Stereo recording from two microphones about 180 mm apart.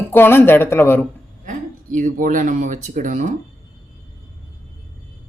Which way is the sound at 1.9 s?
45° right (ahead or behind).